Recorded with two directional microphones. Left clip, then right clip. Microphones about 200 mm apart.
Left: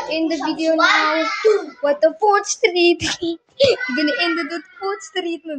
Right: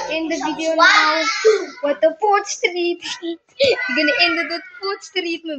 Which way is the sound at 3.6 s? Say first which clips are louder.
Even; 15° left (ahead or behind).